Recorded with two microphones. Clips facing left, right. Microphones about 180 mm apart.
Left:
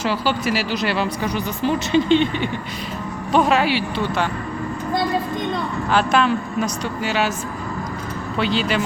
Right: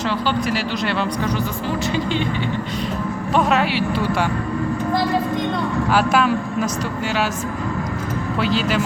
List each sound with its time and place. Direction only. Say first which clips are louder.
0.0 s speech: even; 5° left (ahead or behind)
1.6 s speech: left 8 dB; 25° left (ahead or behind)
3.3 s speech: left 1 dB; centre (ahead or behind)
5.9 s a man's voice: even; 5° right (ahead or behind)
8.4 s speech: even; centre (ahead or behind)